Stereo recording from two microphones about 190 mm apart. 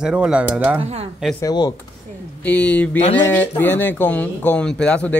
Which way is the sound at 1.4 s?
20° left (ahead or behind).